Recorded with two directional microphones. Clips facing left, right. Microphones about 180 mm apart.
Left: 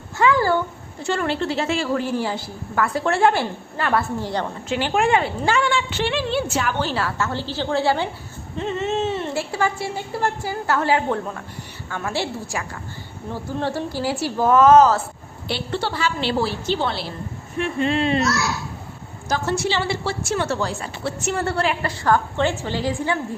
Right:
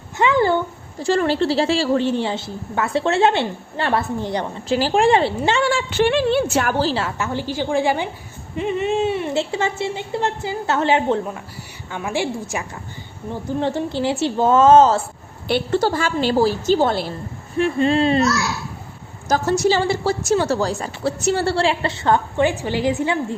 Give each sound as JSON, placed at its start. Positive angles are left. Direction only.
{"t": 0.2, "sound": "a sound", "side_deg": -20}
{"t": 1.0, "sound": "a woman's voice", "side_deg": -35}
{"t": 4.7, "sound": "a woman's voice", "side_deg": -35}
{"t": 5.6, "sound": "a woman's voice", "side_deg": -45}
{"t": 6.7, "sound": "a woman's voice", "side_deg": -30}
{"t": 7.2, "sound": "a woman's voice", "side_deg": -15}
{"t": 9.4, "sound": "a woman's voice", "side_deg": -25}
{"t": 15.4, "sound": "a woman's voice", "side_deg": -50}
{"t": 17.6, "sound": "a woman's voice", "side_deg": -35}
{"t": 19.3, "sound": "a woman's voice", "side_deg": -40}